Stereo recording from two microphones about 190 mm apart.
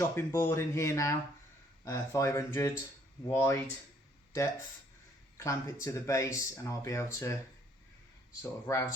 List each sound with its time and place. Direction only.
0.0 s speech: 15° left (ahead or behind)
5.4 s speech: 15° left (ahead or behind)
8.4 s speech: 15° left (ahead or behind)